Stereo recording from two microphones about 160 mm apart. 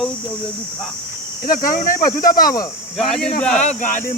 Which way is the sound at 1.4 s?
60° left (ahead or behind).